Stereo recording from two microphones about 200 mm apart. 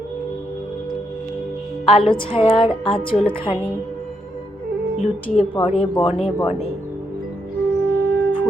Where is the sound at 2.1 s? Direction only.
30° left (ahead or behind).